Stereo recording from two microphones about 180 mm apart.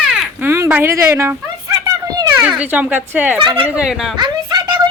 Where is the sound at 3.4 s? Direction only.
30° right (ahead or behind).